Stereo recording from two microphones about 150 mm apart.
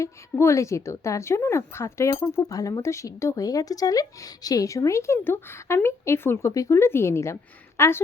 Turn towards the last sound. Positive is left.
turn(degrees=20)  # may be behind; listen again after turning